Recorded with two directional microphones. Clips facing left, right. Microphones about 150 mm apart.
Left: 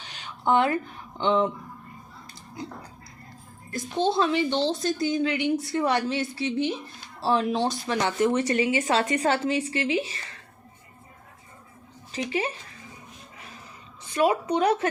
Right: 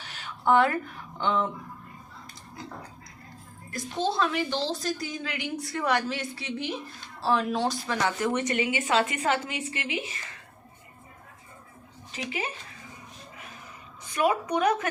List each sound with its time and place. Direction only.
0.4 s a woman's voice: 20° left (ahead or behind)
3.7 s a woman's voice: 25° left (ahead or behind)
12.1 s a woman's voice: 40° left (ahead or behind)
14.1 s a woman's voice: 25° left (ahead or behind)